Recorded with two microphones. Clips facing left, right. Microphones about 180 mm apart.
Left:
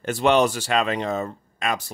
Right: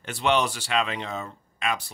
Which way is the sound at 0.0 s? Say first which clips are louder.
Left 6 dB; 45° left (ahead or behind).